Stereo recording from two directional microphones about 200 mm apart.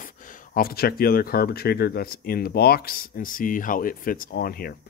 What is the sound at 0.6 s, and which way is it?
Speech, 50° left (ahead or behind).